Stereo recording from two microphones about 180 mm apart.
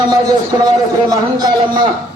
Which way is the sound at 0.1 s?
20° right (ahead or behind).